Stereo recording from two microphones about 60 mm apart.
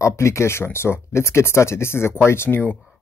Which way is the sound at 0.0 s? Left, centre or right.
Left.